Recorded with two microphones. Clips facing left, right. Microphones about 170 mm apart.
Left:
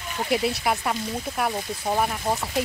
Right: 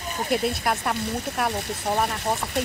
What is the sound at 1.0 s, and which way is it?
Speech, 70° right (ahead or behind).